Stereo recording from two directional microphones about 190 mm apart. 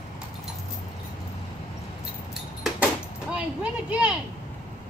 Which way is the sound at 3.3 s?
5° right (ahead or behind).